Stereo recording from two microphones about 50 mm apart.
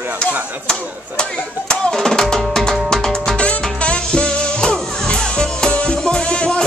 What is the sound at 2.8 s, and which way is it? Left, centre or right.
Music, centre.